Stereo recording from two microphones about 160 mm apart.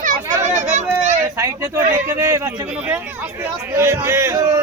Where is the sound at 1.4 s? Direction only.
20° right (ahead or behind).